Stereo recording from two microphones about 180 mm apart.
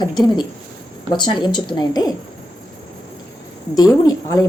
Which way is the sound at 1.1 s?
25° left (ahead or behind).